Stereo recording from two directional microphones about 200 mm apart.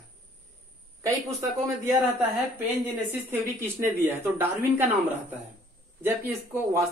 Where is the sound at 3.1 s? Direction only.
10° right (ahead or behind).